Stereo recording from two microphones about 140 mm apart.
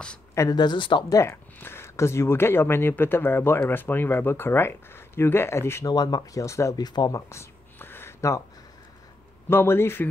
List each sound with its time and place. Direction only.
0.3 s a sound: 20° left (ahead or behind)
0.6 s speech: 35° left (ahead or behind)
1.1 s speech: 20° left (ahead or behind)
9.5 s speech: 15° left (ahead or behind)